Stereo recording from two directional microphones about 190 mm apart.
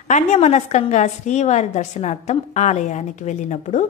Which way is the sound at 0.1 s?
35° left (ahead or behind).